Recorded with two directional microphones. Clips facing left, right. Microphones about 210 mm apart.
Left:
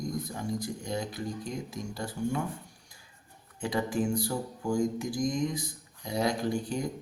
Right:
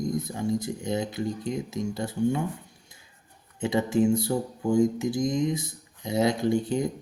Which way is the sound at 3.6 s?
25° right (ahead or behind).